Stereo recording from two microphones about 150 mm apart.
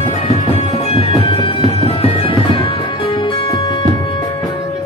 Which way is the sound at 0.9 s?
40° left (ahead or behind).